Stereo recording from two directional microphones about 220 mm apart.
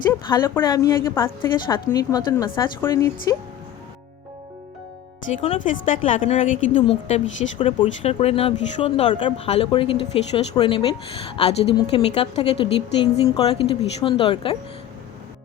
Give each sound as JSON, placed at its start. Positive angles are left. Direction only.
{"t": 0.1, "sound": "a woman's voice", "side_deg": 10}
{"t": 5.4, "sound": "speech", "side_deg": 25}
{"t": 5.9, "sound": "a woman's voice", "side_deg": 35}